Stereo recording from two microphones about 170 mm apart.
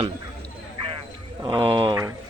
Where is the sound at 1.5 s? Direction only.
30° right (ahead or behind).